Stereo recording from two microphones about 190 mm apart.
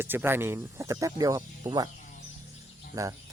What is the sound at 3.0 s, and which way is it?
Speech, 15° right (ahead or behind).